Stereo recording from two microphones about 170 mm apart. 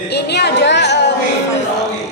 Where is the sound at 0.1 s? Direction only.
80° left.